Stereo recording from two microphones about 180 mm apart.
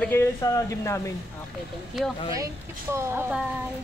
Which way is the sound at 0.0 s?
10° left (ahead or behind).